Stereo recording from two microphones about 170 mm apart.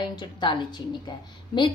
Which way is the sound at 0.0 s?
25° left (ahead or behind).